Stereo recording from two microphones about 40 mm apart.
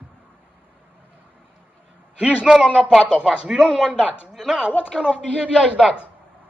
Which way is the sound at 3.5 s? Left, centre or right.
Centre.